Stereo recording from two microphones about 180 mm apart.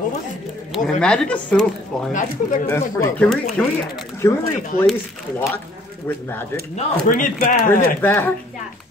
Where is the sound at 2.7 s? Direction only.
15° left (ahead or behind).